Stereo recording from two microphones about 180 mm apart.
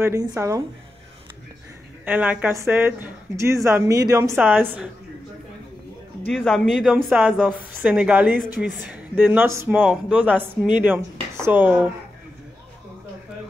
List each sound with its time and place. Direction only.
0.0 s speech: 20° right (ahead or behind)
2.0 s speech: 10° right (ahead or behind)
6.3 s speech: centre (ahead or behind)